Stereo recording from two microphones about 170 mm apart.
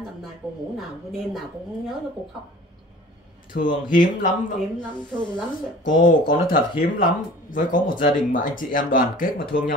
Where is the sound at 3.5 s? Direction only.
50° left (ahead or behind).